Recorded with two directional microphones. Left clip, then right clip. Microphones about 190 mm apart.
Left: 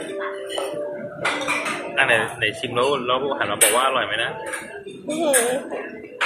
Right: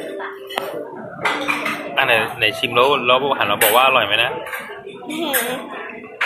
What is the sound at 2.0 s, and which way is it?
Speech, 20° right (ahead or behind).